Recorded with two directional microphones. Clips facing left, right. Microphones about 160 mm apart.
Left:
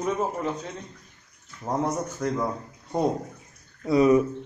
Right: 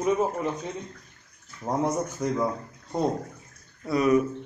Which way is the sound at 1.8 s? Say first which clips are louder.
Right 2 dB; 5° right (ahead or behind).